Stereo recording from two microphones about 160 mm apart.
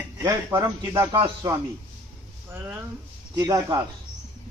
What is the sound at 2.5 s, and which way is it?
Speech, 15° right (ahead or behind).